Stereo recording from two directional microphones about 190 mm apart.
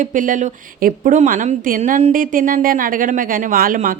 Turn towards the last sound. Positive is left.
turn(degrees=-50)  # may be behind; listen again after turning